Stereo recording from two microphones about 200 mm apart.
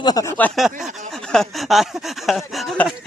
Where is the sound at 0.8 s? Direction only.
Centre (ahead or behind).